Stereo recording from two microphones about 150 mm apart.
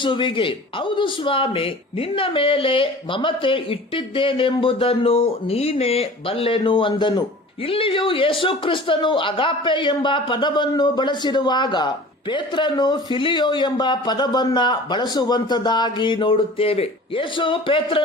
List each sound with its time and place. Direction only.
0.0 s speech: 35° left (ahead or behind)